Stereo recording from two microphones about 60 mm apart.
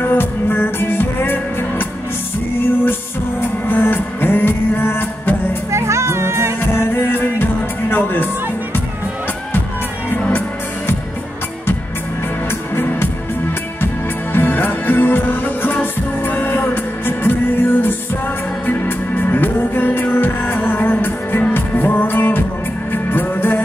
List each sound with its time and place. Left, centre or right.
0.0 s music: left
5.7 s music: right
6.6 s music: left
12.4 s music: left
14.3 s music: left